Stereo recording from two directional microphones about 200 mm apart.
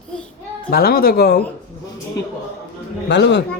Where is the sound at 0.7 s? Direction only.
50° left (ahead or behind).